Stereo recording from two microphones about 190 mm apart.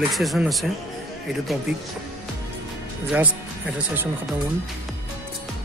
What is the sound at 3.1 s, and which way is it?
Speech, 5° right (ahead or behind).